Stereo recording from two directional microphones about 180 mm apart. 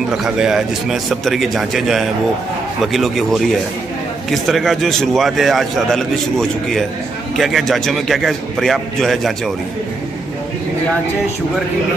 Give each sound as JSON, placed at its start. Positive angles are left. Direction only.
{"t": 0.2, "sound": "a man's voice", "side_deg": 0}